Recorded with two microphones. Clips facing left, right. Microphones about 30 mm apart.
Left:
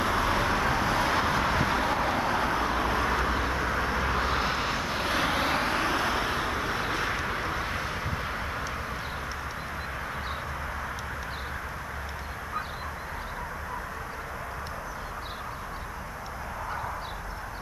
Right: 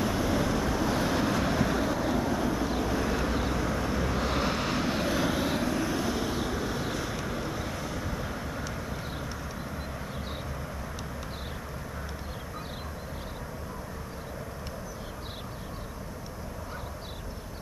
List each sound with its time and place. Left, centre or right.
0.0 s vehicle: left
4.3 s vehicle: centre
5.1 s vehicle: left